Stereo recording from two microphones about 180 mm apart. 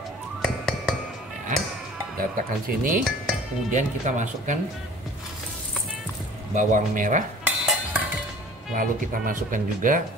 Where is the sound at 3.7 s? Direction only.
45° right (ahead or behind).